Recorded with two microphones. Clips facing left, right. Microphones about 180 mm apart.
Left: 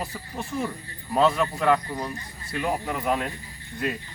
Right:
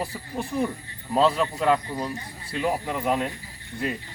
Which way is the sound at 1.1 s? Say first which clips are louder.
Even; 20° right (ahead or behind).